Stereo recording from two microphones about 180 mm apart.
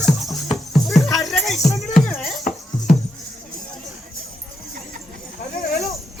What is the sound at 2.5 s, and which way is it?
Music, 50° left (ahead or behind).